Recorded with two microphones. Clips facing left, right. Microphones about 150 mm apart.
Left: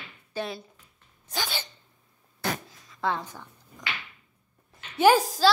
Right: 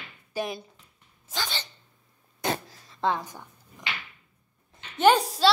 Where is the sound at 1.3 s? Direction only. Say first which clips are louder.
Left 1 dB; 10° left (ahead or behind).